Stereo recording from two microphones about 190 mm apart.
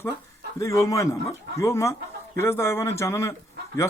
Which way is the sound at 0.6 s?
15° left (ahead or behind).